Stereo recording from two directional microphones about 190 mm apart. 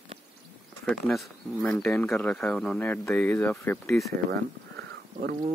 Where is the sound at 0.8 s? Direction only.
Centre (ahead or behind).